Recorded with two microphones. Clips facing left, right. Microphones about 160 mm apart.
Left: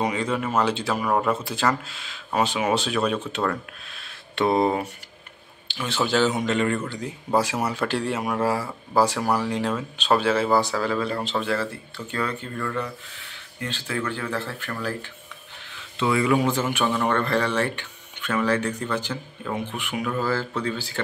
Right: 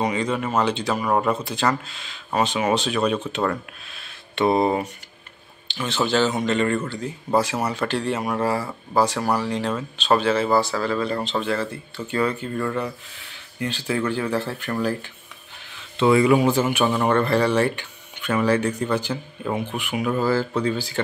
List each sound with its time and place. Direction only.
0.0 s speech: centre (ahead or behind)
5.7 s speech: 10° left (ahead or behind)
12.2 s speech: 10° right (ahead or behind)
16.0 s speech: 30° right (ahead or behind)
16.3 s speech: 10° right (ahead or behind)